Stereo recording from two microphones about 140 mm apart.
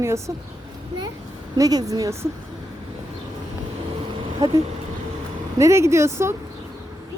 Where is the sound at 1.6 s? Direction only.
25° right (ahead or behind).